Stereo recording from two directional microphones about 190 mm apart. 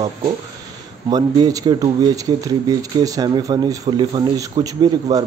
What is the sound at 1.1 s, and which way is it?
Speech, 20° right (ahead or behind).